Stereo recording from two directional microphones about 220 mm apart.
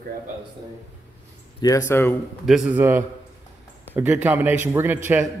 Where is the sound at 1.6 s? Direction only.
15° left (ahead or behind).